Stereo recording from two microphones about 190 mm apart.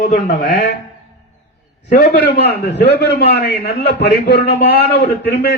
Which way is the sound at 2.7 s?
65° left (ahead or behind).